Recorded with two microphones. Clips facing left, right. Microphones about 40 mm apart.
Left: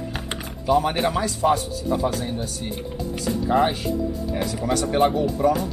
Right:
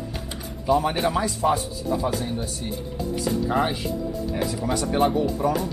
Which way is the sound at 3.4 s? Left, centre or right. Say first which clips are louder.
Left 5 dB; centre.